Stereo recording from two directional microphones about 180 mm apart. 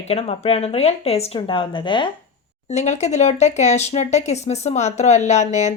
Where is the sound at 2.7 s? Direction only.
40° left (ahead or behind).